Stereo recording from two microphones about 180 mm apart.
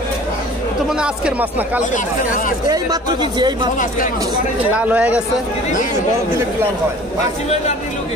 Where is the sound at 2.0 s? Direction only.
45° left (ahead or behind).